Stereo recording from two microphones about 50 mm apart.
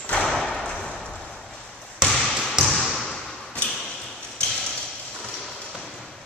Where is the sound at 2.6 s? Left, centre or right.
Centre.